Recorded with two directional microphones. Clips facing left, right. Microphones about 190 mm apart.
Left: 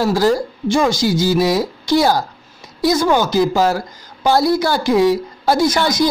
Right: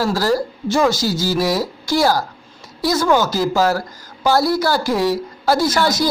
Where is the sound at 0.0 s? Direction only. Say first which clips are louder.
Left 3 dB; 20° left (ahead or behind).